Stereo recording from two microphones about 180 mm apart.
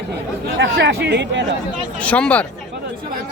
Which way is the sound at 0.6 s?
85° right.